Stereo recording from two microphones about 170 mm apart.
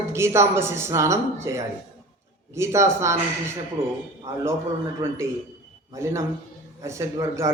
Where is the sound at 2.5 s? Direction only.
15° right (ahead or behind).